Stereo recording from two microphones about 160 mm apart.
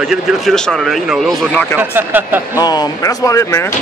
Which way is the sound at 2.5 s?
25° left (ahead or behind).